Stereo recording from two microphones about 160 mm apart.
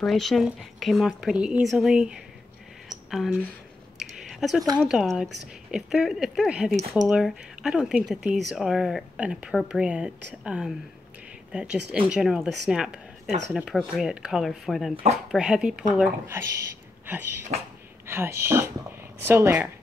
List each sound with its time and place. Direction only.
0.0 s speech: centre (ahead or behind)
4.0 s a sound: centre (ahead or behind)
4.8 s speech: 5° right (ahead or behind)
18.0 s speech: 15° right (ahead or behind)